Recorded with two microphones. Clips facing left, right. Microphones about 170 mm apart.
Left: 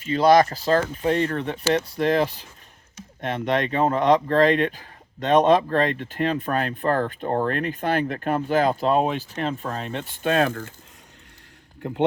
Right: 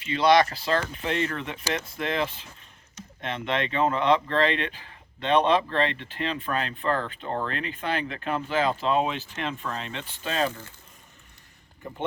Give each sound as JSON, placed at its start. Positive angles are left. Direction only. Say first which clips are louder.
{"t": 0.0, "sound": "speech", "louder": "left 4 dB", "side_deg": 45}
{"t": 11.8, "sound": "speech", "louder": "left 8 dB", "side_deg": 80}